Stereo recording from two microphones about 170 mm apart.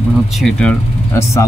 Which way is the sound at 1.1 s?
15° left (ahead or behind).